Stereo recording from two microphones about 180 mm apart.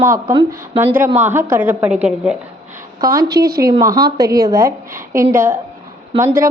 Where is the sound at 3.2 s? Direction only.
60° right (ahead or behind).